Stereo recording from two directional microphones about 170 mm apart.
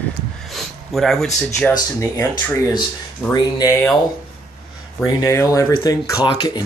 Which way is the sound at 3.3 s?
20° left (ahead or behind).